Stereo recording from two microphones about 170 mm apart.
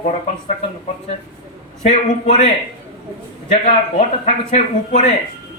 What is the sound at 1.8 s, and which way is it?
Speech, 40° left (ahead or behind).